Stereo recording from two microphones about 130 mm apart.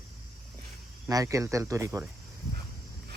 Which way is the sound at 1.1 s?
25° right (ahead or behind).